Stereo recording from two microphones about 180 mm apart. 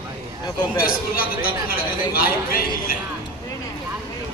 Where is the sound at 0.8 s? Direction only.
55° left (ahead or behind).